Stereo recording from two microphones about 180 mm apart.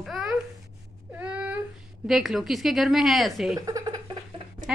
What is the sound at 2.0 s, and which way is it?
A woman's voice, centre (ahead or behind).